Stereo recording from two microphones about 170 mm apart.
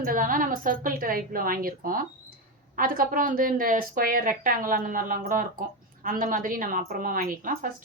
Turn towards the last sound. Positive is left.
turn(degrees=-55)  # may be behind; listen again after turning